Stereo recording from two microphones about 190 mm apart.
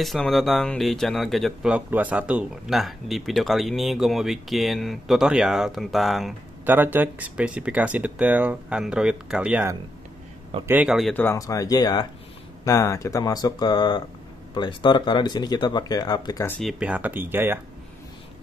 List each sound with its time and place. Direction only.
0.0 s speech: centre (ahead or behind)
11.1 s speech: 15° left (ahead or behind)
16.5 s speech: 5° right (ahead or behind)